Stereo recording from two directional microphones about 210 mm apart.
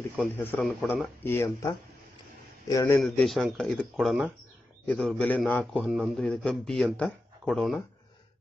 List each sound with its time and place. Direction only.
0.2 s a man's voice: 5° left (ahead or behind)
2.7 s speech: 15° left (ahead or behind)
3.0 s a man's voice: centre (ahead or behind)